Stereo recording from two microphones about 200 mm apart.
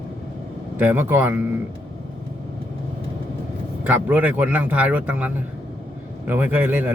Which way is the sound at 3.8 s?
10° right (ahead or behind).